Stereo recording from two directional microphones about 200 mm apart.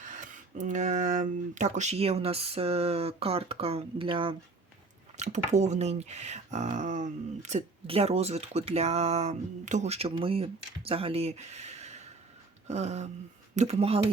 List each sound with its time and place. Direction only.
0.0 s speech: 40° right (ahead or behind)